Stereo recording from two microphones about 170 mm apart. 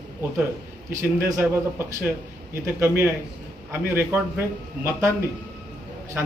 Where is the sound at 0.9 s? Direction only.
15° right (ahead or behind).